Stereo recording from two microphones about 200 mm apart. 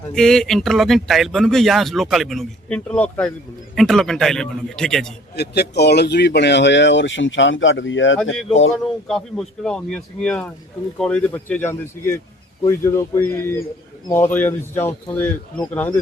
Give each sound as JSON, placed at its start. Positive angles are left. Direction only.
{"t": 0.1, "sound": "speech", "side_deg": 0}
{"t": 5.4, "sound": "speech", "side_deg": 55}
{"t": 8.7, "sound": "speech", "side_deg": 0}